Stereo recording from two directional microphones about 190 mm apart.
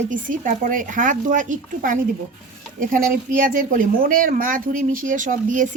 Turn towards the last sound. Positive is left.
turn(degrees=-45)  # may be behind; listen again after turning